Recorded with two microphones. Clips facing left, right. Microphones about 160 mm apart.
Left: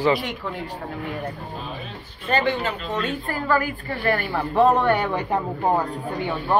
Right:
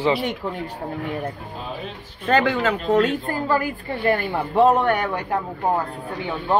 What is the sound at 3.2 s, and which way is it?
A woman's voice, 20° right (ahead or behind).